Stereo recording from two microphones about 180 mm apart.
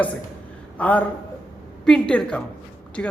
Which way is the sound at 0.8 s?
10° left (ahead or behind).